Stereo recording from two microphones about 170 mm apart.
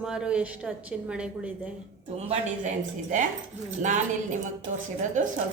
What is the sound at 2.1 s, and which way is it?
A woman's voice, 40° right (ahead or behind).